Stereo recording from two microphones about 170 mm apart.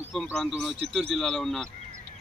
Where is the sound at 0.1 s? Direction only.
Centre (ahead or behind).